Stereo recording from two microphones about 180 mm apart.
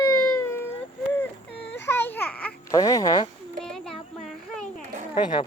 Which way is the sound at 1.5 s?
75° left (ahead or behind).